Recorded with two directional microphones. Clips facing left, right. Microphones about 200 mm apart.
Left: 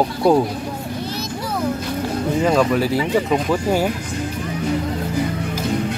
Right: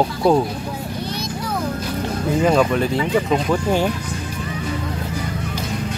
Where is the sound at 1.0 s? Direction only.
5° left (ahead or behind).